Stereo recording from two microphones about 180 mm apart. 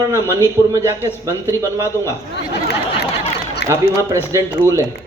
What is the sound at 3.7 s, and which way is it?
Speech, 15° right (ahead or behind).